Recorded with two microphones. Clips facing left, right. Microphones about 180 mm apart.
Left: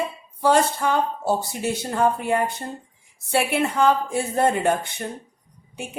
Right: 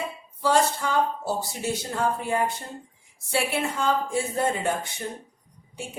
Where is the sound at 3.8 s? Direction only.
60° left (ahead or behind).